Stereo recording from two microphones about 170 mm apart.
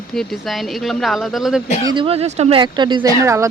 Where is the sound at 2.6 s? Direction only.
25° right (ahead or behind).